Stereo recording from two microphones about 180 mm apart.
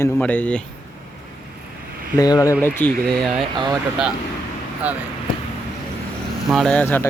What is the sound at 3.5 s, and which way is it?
Speech, 25° right (ahead or behind).